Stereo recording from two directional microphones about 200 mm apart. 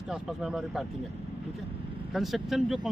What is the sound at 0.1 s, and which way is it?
Speech, centre (ahead or behind).